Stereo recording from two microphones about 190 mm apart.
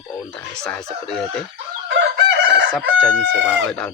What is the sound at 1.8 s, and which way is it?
Chicken, 70° right (ahead or behind).